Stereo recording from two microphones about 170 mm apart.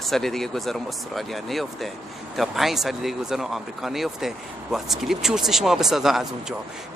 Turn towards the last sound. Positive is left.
turn(degrees=0)  # may be behind; listen again after turning